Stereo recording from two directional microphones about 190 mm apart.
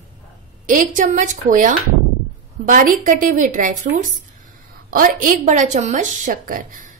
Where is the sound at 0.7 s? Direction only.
45° right (ahead or behind).